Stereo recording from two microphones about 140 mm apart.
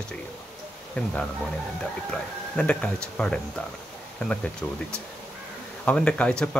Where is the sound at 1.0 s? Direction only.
10° left (ahead or behind).